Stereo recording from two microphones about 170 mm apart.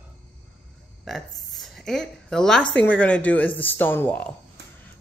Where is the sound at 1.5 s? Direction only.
Centre (ahead or behind).